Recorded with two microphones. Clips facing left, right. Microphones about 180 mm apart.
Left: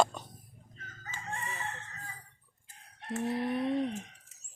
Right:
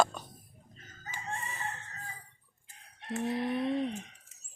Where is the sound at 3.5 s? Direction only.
10° left (ahead or behind).